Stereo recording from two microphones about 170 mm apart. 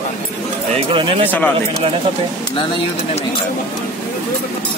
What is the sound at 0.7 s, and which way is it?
Speech, 35° right (ahead or behind).